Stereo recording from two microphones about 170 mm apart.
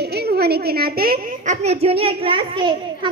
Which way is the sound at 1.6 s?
35° right (ahead or behind).